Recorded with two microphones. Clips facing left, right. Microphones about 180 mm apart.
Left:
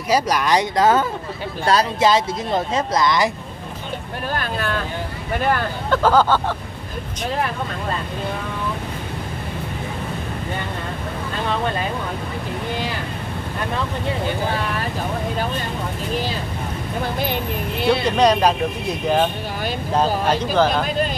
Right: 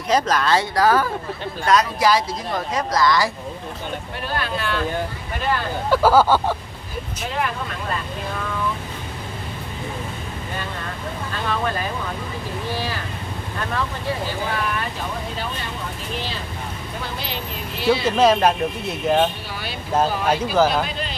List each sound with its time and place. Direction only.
0.1 s speech: 15° left (ahead or behind)
4.3 s speech: 45° left (ahead or behind)
5.9 s speech: 10° right (ahead or behind)
18.0 s speech: 5° right (ahead or behind)